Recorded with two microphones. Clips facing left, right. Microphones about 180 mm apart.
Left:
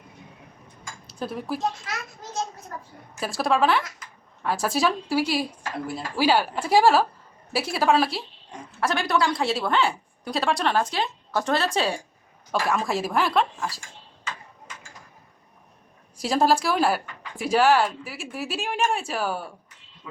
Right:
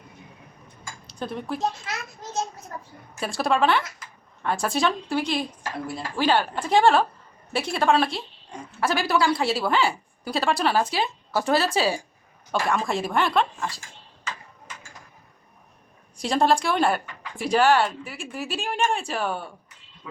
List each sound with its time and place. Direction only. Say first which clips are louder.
1.0 s speech: even; 5° left (ahead or behind)
2.7 s a sound: even; 25° right (ahead or behind)
3.2 s speech: even; centre (ahead or behind)
16.1 s speech: even; 5° left (ahead or behind)